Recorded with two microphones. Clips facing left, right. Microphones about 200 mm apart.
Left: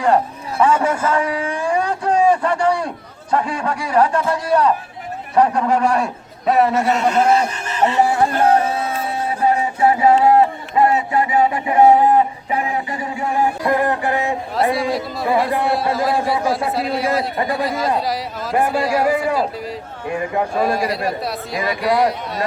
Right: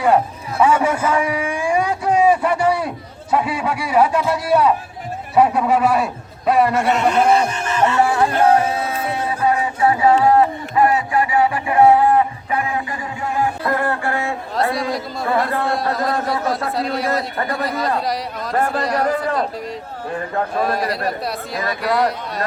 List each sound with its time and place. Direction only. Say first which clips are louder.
0.6 s a man's voice: even; 10° right (ahead or behind)
7.5 s speech: even; 35° left (ahead or behind)
8.0 s music: even; 30° left (ahead or behind)
9.4 s a sound: left 2 dB; 25° left (ahead or behind)
14.8 s a man's voice: left 2 dB; centre (ahead or behind)
15.3 s a man's voice: left 2 dB; 15° left (ahead or behind)
15.7 s a man's voice: left 2 dB; centre (ahead or behind)
20.6 s a man's voice: left 1 dB; centre (ahead or behind)